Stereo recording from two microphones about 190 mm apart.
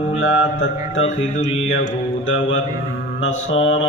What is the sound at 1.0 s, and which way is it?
Music, 35° left (ahead or behind).